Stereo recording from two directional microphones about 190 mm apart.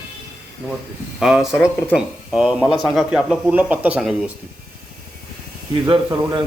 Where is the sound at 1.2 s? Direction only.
Centre (ahead or behind).